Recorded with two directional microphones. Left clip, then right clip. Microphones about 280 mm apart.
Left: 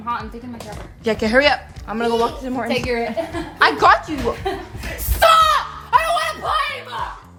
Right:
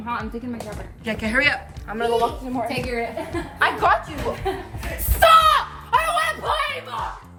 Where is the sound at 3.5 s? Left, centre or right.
Left.